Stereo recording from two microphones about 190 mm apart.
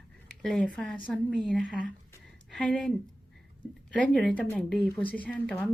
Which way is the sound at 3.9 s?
5° left (ahead or behind).